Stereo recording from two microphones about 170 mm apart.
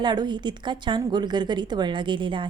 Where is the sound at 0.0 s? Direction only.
25° right (ahead or behind).